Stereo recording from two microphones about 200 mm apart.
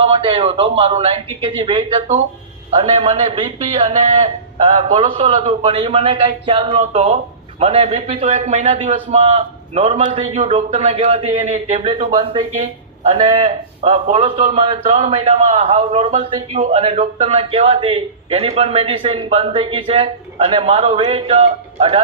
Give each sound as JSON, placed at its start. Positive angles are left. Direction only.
{"t": 0.0, "sound": "a man's voice", "side_deg": -30}